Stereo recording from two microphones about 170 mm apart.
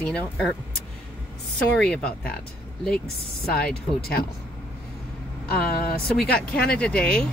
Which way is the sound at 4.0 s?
65° left (ahead or behind).